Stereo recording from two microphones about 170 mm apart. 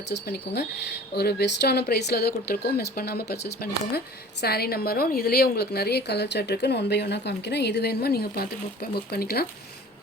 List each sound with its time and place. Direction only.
0.1 s speech: 70° left (ahead or behind)